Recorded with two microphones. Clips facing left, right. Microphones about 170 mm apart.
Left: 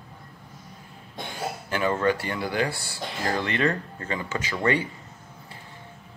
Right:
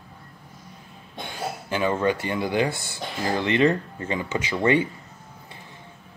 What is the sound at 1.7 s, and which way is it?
Speech, 20° right (ahead or behind).